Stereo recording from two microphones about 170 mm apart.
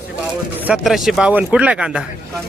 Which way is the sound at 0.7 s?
Centre (ahead or behind).